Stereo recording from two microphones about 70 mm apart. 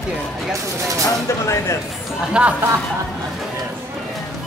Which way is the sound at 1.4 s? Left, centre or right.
Left.